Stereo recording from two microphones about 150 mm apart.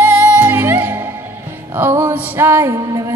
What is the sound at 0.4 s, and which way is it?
Music, 15° right (ahead or behind).